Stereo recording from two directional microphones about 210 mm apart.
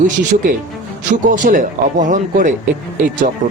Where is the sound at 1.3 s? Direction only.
40° right (ahead or behind).